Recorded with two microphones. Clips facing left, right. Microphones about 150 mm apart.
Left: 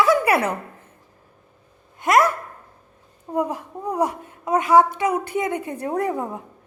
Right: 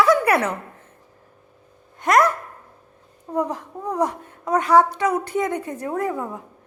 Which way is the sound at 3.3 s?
10° left (ahead or behind).